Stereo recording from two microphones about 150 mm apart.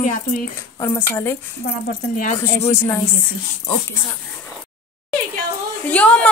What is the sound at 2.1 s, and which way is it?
Speech, 60° left (ahead or behind).